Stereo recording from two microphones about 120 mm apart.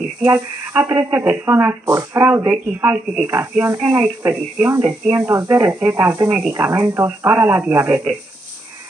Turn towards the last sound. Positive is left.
turn(degrees=-15)  # may be behind; listen again after turning